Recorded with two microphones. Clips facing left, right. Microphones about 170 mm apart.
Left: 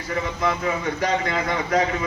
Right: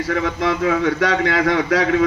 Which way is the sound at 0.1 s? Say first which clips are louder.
Right 3 dB; 90° right.